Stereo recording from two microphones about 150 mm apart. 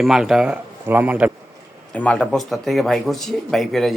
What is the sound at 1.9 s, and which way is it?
Speech, 10° left (ahead or behind).